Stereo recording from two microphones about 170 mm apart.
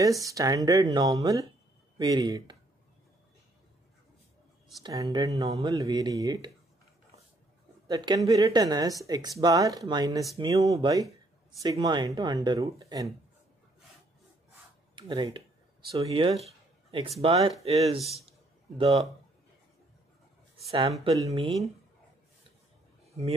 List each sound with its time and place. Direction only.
0.2 s speech: 20° right (ahead or behind)
4.8 s speech: 20° right (ahead or behind)
7.9 s speech: 20° right (ahead or behind)
15.0 s speech: 30° right (ahead or behind)
21.3 s speech: 35° right (ahead or behind)